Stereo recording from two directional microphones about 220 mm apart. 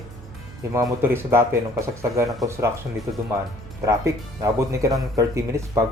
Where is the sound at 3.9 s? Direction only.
15° right (ahead or behind).